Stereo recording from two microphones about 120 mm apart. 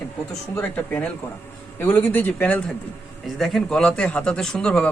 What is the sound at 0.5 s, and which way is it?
Speech, 15° left (ahead or behind).